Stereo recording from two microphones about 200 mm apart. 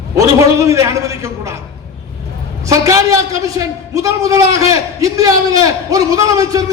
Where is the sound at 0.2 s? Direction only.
15° right (ahead or behind).